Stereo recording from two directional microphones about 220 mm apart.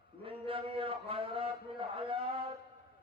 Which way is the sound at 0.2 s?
25° right (ahead or behind).